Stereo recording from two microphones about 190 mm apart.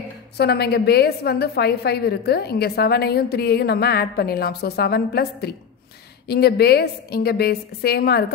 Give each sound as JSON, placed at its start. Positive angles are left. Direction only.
{"t": 0.4, "sound": "a woman's voice", "side_deg": 60}